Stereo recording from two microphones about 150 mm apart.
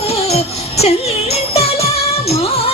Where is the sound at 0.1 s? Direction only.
45° left (ahead or behind).